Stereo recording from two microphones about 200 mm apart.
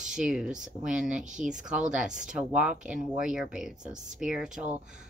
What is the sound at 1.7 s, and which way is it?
Speech, 5° right (ahead or behind).